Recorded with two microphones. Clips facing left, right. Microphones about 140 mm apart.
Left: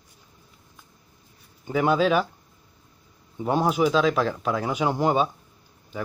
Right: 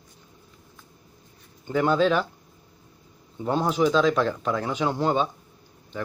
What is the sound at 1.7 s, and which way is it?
Speech, 5° left (ahead or behind).